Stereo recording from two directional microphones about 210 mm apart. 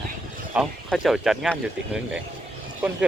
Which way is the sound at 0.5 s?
Centre (ahead or behind).